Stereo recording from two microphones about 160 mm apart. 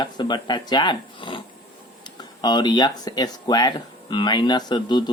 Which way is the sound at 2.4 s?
25° left (ahead or behind).